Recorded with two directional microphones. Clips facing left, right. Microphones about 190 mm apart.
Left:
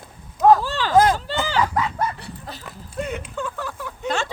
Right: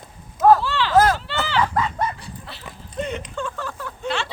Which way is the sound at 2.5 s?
40° left (ahead or behind).